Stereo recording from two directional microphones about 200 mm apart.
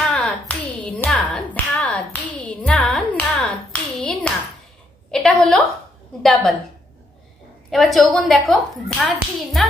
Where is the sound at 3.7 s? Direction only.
5° left (ahead or behind).